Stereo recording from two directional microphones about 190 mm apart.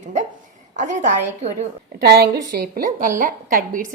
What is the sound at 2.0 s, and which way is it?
A woman's voice, 55° right (ahead or behind).